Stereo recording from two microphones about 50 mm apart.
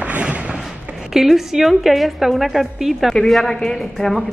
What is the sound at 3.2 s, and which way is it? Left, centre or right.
A woman's voice, centre.